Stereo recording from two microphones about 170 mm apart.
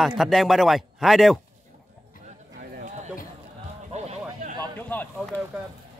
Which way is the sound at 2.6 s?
50° right (ahead or behind).